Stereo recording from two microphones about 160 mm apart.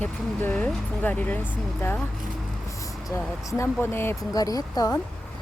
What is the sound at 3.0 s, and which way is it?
Speech, 20° left (ahead or behind).